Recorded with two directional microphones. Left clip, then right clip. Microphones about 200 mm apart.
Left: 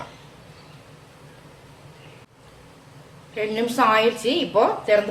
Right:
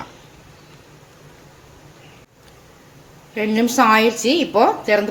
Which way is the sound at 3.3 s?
45° right (ahead or behind).